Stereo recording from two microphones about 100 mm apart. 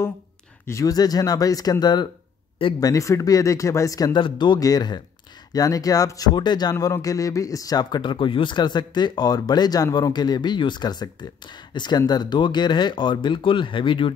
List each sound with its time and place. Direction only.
0.7 s speech: 35° left (ahead or behind)
2.8 s speech: 35° left (ahead or behind)
4.1 s speech: 50° left (ahead or behind)
4.6 s speech: 40° left (ahead or behind)
6.7 s speech: 35° left (ahead or behind); by 14.1 s 55° left (ahead or behind)